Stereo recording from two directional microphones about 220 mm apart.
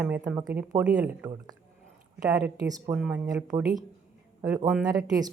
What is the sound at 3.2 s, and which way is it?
Speech, 15° right (ahead or behind).